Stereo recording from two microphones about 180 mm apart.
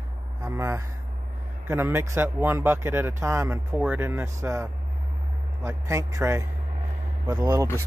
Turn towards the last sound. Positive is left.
turn(degrees=-15)  # may be behind; listen again after turning